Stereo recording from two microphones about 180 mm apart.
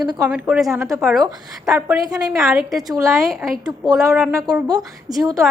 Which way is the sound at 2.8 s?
20° right (ahead or behind).